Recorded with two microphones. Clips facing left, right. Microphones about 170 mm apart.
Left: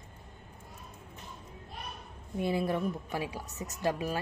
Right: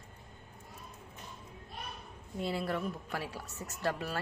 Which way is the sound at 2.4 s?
15° left (ahead or behind).